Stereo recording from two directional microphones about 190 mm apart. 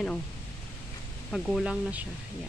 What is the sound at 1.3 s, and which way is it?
Speech, centre (ahead or behind).